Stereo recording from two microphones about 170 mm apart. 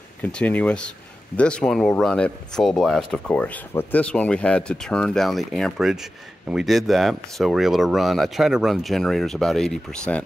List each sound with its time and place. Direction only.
0.2 s speech: 10° left (ahead or behind)